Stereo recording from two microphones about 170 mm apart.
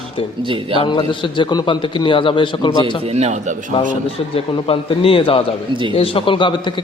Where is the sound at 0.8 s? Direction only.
30° left (ahead or behind).